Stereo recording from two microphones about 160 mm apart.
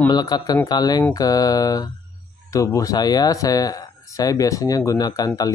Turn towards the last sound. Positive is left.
turn(degrees=20)  # may be behind; listen again after turning